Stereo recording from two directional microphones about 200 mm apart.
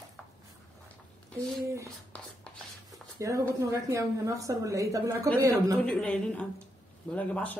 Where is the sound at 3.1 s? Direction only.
15° right (ahead or behind).